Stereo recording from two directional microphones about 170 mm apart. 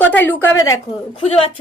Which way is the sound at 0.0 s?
10° left (ahead or behind).